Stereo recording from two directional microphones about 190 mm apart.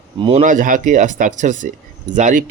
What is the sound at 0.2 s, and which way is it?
Speech, 25° right (ahead or behind).